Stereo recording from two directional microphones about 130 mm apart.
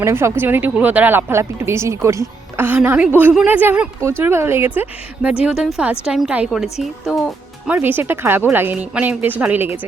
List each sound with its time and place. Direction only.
0.0 s speech: 20° right (ahead or behind)
5.5 s a woman's voice: 5° right (ahead or behind)
7.7 s speech: 15° right (ahead or behind)